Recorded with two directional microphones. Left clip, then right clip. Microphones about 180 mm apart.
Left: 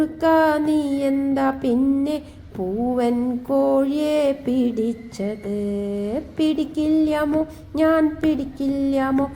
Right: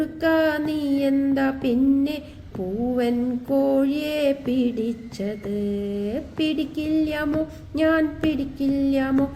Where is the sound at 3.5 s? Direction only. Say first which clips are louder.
Left 2 dB; 15° left (ahead or behind).